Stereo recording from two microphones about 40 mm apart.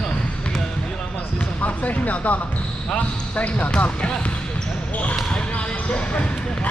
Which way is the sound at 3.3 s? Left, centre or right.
Left.